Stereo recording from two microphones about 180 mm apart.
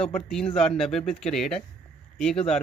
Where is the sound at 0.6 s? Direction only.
5° left (ahead or behind).